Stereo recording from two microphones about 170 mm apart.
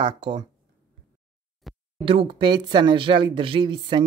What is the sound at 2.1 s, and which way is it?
Speech, 30° right (ahead or behind).